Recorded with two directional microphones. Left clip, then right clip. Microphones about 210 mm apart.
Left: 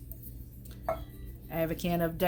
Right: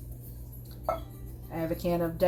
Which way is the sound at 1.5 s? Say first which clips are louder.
Right 1 dB; 65° left (ahead or behind).